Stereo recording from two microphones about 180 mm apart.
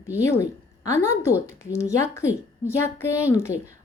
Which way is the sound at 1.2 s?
15° left (ahead or behind).